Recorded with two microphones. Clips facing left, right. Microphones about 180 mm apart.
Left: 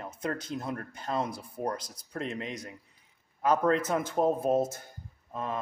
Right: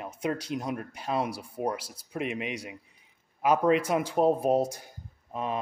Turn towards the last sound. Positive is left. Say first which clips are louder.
# right 3 dB
turn(degrees=-15)  # may be behind; listen again after turning